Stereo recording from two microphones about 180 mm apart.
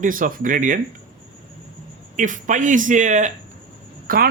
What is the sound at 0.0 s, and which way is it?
Speech, 50° right (ahead or behind).